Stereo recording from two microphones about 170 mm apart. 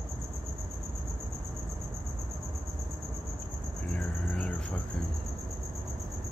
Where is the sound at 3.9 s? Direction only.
5° left (ahead or behind).